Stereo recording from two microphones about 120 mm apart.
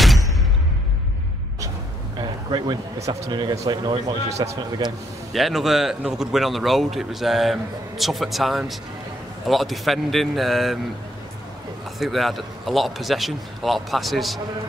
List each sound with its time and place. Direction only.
2.1 s a sound: 40° right (ahead or behind)
3.1 s speech: 35° right (ahead or behind)
4.3 s a man's voice: 65° right (ahead or behind)
5.3 s a man's voice: centre (ahead or behind)
12.0 s a man's voice: centre (ahead or behind)